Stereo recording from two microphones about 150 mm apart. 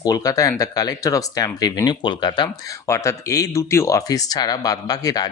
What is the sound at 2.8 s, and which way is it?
Speech, 20° left (ahead or behind).